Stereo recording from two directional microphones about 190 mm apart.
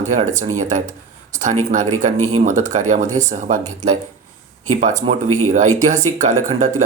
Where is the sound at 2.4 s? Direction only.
40° right (ahead or behind).